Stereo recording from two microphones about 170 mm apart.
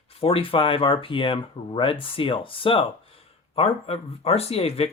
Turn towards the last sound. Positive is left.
turn(degrees=35)  # may be behind; listen again after turning